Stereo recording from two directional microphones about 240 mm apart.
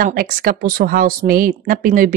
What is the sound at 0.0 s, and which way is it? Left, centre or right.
A woman's voice, right.